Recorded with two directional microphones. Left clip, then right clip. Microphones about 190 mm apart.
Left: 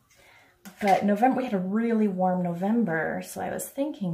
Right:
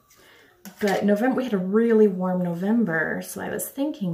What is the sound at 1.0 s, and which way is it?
Speech, 15° left (ahead or behind).